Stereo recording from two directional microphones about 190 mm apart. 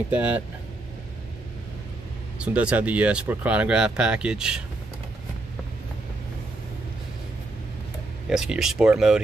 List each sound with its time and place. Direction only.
0.1 s speech: 10° right (ahead or behind)
2.3 s speech: 5° right (ahead or behind)
8.3 s speech: 5° right (ahead or behind)